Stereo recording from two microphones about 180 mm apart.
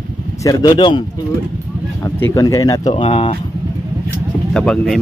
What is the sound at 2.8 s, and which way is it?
Speech, 30° left (ahead or behind).